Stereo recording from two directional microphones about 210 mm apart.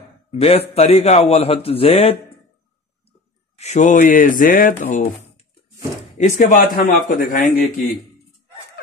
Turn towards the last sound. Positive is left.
turn(degrees=40)  # may be behind; listen again after turning